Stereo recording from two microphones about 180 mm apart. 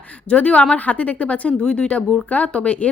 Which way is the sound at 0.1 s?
5° left (ahead or behind).